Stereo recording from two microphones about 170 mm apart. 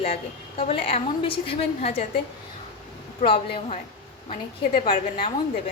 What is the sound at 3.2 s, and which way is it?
Speech, 35° left (ahead or behind).